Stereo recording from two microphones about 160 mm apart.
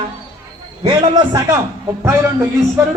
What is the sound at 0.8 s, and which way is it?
A man's voice, 30° right (ahead or behind).